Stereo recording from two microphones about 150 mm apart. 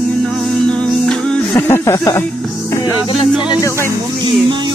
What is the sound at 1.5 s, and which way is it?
Speech, 15° left (ahead or behind).